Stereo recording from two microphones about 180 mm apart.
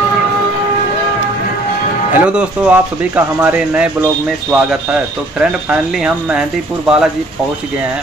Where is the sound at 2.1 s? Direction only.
5° right (ahead or behind).